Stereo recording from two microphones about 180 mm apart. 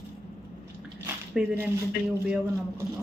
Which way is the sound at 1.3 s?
10° right (ahead or behind).